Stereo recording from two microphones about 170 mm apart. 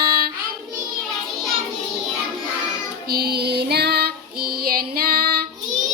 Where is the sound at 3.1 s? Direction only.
65° right (ahead or behind).